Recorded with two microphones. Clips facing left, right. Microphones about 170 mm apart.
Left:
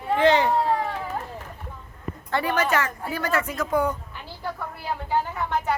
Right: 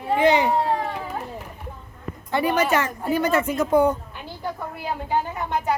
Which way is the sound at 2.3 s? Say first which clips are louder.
Right 3 dB; 15° right (ahead or behind).